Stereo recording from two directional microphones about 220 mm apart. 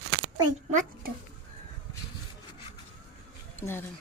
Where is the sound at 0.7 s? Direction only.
35° right (ahead or behind).